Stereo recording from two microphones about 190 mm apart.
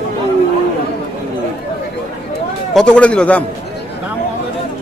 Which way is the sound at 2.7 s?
5° left (ahead or behind).